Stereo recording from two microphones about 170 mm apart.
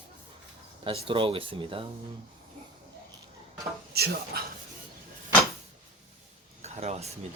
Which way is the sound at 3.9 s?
65° right (ahead or behind).